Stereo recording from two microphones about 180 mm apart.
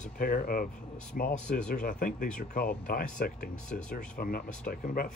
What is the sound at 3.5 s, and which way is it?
Speech, 5° left (ahead or behind).